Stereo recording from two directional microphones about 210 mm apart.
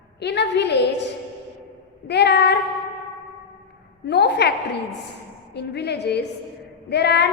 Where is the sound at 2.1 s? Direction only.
55° left (ahead or behind).